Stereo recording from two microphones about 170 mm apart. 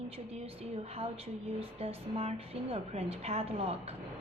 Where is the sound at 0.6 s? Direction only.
35° right (ahead or behind).